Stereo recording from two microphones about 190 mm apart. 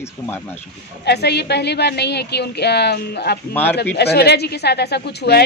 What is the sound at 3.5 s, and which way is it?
Speech, 10° left (ahead or behind).